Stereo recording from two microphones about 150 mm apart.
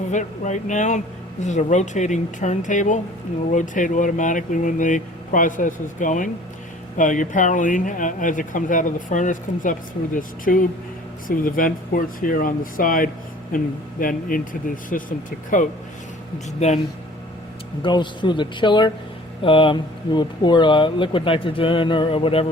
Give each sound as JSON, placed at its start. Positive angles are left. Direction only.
{"t": 0.1, "sound": "speech", "side_deg": 55}
{"t": 17.8, "sound": "speech", "side_deg": 30}